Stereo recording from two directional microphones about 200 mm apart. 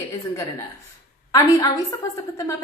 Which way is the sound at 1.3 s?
20° left (ahead or behind).